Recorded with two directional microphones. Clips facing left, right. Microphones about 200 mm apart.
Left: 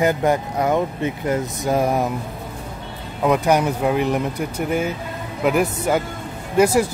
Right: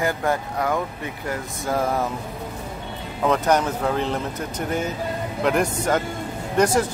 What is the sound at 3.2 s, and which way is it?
Speech, 10° left (ahead or behind).